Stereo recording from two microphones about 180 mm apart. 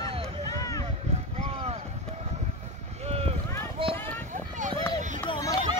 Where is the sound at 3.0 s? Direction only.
35° right (ahead or behind).